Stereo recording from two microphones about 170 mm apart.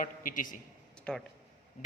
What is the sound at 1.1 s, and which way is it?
Speech, 5° left (ahead or behind).